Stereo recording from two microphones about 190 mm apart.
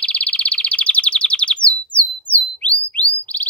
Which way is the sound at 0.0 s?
5° left (ahead or behind).